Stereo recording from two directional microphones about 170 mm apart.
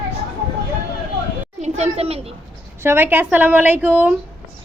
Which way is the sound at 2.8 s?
15° right (ahead or behind).